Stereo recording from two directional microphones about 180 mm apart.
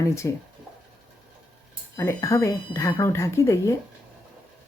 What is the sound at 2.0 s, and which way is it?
Speech, 15° left (ahead or behind).